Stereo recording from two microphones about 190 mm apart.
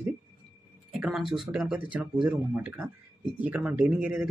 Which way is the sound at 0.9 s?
Centre (ahead or behind).